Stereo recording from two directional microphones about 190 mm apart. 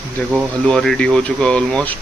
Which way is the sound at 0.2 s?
10° left (ahead or behind).